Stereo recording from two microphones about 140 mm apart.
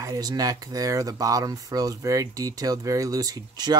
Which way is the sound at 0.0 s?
25° right (ahead or behind).